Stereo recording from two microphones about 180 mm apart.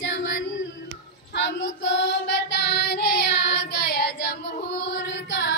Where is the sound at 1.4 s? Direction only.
85° left.